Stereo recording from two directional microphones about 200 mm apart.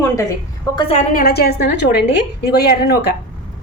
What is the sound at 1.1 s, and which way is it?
Speech, 50° left (ahead or behind).